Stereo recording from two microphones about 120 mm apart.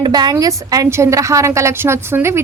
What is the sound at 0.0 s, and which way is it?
A woman's voice, 35° right (ahead or behind).